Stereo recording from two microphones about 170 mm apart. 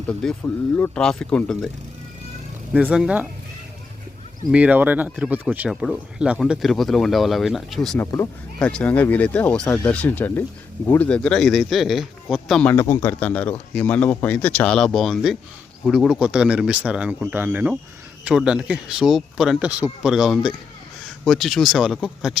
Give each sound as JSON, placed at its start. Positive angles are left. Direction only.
{"t": 0.1, "sound": "speech", "side_deg": 5}
{"t": 2.7, "sound": "speech", "side_deg": -5}
{"t": 4.5, "sound": "speech", "side_deg": -10}
{"t": 7.9, "sound": "speech", "side_deg": 20}
{"t": 8.5, "sound": "speech", "side_deg": 5}